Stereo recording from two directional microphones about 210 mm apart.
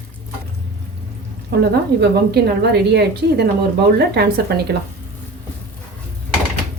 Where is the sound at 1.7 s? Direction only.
50° right (ahead or behind).